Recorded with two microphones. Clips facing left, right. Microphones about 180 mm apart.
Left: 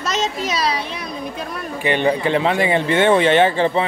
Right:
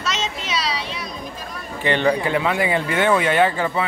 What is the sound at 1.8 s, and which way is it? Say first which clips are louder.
Speech: left 1 dB; 15° left (ahead or behind).